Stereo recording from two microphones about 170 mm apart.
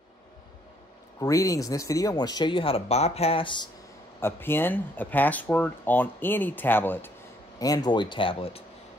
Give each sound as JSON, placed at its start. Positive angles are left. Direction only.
{"t": 1.2, "sound": "speech", "side_deg": 20}
{"t": 4.2, "sound": "speech", "side_deg": 10}